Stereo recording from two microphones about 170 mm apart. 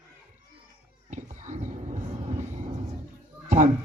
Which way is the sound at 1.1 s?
45° right (ahead or behind).